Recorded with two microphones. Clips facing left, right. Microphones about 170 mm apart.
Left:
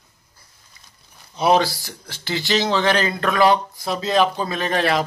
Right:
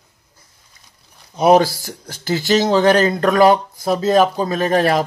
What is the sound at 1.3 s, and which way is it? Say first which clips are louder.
Speech: right 5 dB; 45° right (ahead or behind).